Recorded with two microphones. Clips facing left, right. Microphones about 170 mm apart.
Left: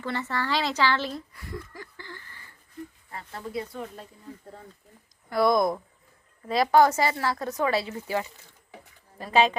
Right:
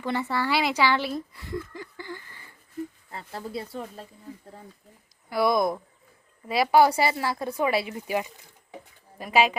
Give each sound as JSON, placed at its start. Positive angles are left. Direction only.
{"t": 0.0, "sound": "speech", "side_deg": -15}
{"t": 3.1, "sound": "speech", "side_deg": -30}
{"t": 5.3, "sound": "speech", "side_deg": 0}